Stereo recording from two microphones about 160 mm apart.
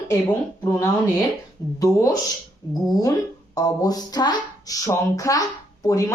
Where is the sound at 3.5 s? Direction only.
25° left (ahead or behind).